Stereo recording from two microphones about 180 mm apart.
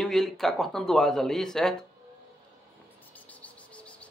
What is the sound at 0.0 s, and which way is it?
Speech, centre (ahead or behind).